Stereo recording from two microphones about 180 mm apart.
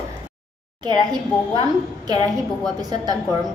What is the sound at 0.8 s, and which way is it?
A woman's voice, 25° right (ahead or behind).